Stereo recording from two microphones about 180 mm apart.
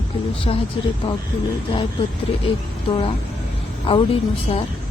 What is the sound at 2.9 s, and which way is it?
A woman's voice, 30° left (ahead or behind).